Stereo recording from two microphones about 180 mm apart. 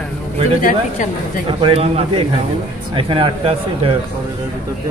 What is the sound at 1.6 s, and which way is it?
Speech, 30° right (ahead or behind).